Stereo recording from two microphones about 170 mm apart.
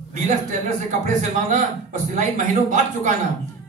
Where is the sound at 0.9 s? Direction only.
45° right (ahead or behind).